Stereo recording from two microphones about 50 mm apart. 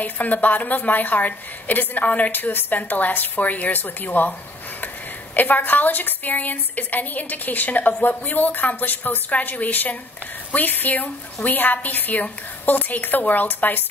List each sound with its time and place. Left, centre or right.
0.0 s a woman's voice: left
5.3 s a woman's voice: left